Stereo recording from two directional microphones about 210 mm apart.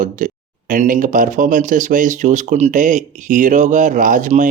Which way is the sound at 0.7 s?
35° right (ahead or behind).